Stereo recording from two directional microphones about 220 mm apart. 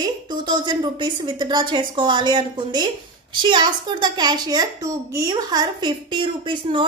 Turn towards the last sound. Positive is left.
turn(degrees=-20)  # may be behind; listen again after turning